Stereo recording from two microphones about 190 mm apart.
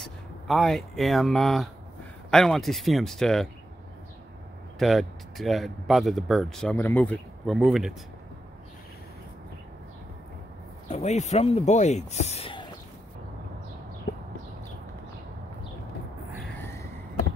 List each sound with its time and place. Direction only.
0.0 s speech: centre (ahead or behind)
4.7 s speech: centre (ahead or behind)
10.9 s speech: 35° left (ahead or behind)